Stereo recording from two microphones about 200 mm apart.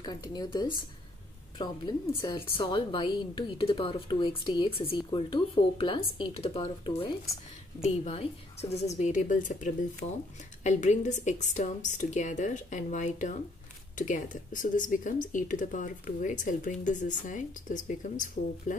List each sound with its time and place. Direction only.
0.0 s a woman's voice: 20° left (ahead or behind); by 18.8 s 40° left (ahead or behind)